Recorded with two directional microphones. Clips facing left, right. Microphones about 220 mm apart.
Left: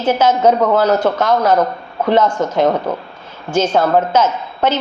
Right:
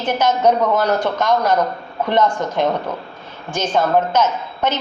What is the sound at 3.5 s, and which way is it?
Speech, 10° left (ahead or behind).